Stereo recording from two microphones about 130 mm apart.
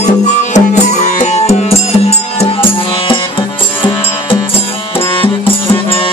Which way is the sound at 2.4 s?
45° left (ahead or behind).